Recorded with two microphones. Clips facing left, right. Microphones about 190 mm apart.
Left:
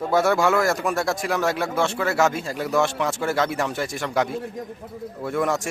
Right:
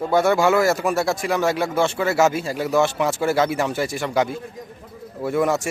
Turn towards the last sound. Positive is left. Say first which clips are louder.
# right 3 dB
turn(degrees=-5)  # may be behind; listen again after turning